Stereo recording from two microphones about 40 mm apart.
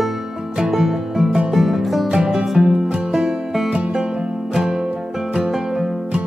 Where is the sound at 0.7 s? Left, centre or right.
Centre.